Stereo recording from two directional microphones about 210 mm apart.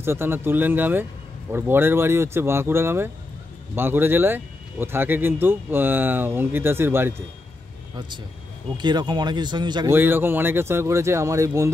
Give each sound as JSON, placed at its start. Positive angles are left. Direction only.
{"t": 0.0, "sound": "speech", "side_deg": -10}
{"t": 8.7, "sound": "speech", "side_deg": -20}
{"t": 9.9, "sound": "speech", "side_deg": -10}